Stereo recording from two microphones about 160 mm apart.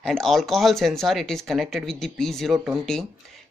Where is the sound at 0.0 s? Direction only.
5° left (ahead or behind).